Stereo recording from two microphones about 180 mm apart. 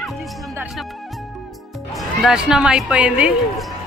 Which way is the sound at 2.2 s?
5° right (ahead or behind).